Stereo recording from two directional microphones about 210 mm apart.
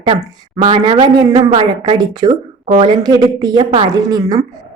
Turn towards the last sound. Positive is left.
turn(degrees=-20)  # may be behind; listen again after turning